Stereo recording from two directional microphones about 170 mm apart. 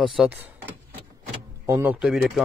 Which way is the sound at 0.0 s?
Centre (ahead or behind).